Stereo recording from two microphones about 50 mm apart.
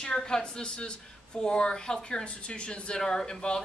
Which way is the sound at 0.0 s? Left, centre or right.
Centre.